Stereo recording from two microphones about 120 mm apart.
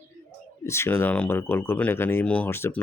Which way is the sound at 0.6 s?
20° left (ahead or behind).